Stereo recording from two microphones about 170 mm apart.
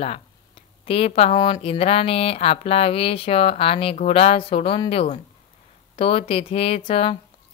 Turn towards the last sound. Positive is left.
turn(degrees=30)  # may be behind; listen again after turning